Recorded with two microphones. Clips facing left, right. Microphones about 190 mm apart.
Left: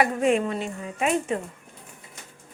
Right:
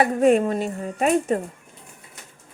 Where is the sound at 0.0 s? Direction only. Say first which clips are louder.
Right 4 dB; 40° right (ahead or behind).